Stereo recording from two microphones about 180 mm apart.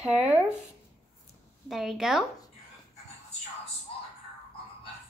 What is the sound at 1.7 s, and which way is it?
Speech, centre (ahead or behind).